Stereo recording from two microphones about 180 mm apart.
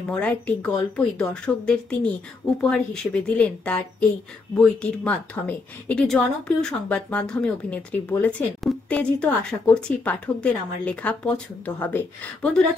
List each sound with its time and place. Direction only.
0.1 s a woman's voice: 5° left (ahead or behind)